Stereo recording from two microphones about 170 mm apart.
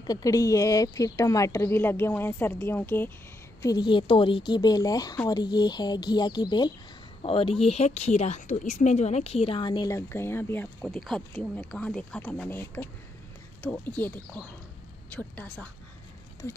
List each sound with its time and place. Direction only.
0.0 s speech: 20° left (ahead or behind)
3.6 s a woman's voice: 25° left (ahead or behind)
10.8 s speech: centre (ahead or behind)